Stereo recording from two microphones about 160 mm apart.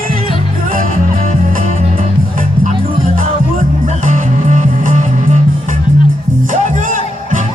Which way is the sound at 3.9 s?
55° right (ahead or behind).